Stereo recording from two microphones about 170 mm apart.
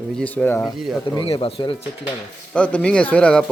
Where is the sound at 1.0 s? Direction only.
30° left (ahead or behind).